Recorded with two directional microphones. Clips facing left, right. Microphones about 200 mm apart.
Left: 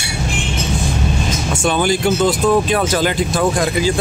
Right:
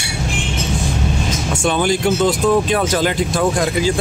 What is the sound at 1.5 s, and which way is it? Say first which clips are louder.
Speech: even; 5° left (ahead or behind).